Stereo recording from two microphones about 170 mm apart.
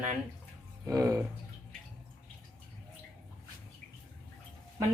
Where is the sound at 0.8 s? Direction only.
20° right (ahead or behind).